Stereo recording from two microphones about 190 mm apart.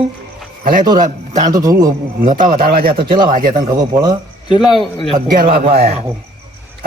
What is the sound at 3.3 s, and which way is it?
Speech, 45° right (ahead or behind).